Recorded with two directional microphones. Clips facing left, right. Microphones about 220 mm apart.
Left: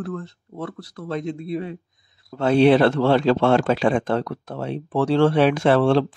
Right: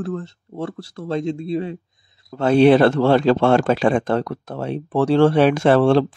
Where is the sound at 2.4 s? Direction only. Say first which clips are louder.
Right 2 dB; 45° right (ahead or behind).